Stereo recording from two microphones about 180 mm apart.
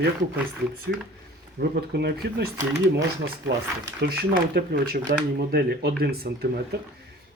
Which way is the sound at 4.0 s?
60° right (ahead or behind).